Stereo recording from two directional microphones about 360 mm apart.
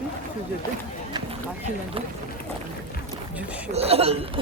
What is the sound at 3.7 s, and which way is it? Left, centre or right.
Speech, centre.